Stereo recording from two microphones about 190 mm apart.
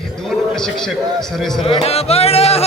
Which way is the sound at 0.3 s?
Centre (ahead or behind).